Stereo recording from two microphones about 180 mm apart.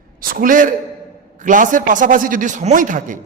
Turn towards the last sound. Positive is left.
turn(degrees=-45)  # may be behind; listen again after turning